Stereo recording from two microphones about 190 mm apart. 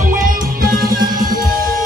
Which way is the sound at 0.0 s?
45° right (ahead or behind).